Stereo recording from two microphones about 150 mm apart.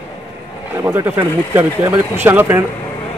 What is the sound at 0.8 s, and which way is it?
A man's voice, 15° right (ahead or behind).